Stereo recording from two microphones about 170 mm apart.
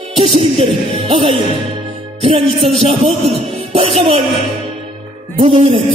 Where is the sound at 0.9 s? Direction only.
30° right (ahead or behind).